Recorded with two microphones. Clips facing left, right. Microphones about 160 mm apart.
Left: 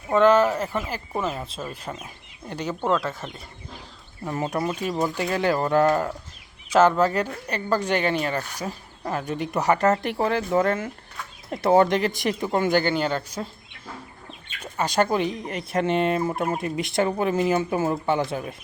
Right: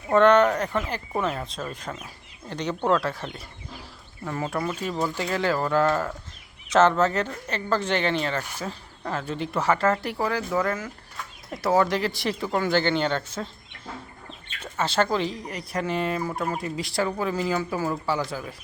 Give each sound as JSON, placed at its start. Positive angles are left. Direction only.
{"t": 0.1, "sound": "speech", "side_deg": 5}
{"t": 4.3, "sound": "speech", "side_deg": 20}
{"t": 14.6, "sound": "speech", "side_deg": 15}